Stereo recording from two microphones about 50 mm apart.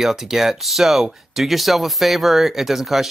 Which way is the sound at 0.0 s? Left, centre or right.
Centre.